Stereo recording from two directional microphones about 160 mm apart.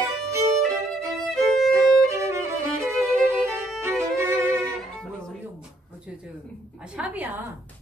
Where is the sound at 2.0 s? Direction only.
20° right (ahead or behind).